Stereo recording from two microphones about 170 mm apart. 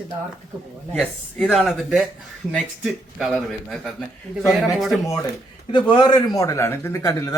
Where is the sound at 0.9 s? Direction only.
Centre (ahead or behind).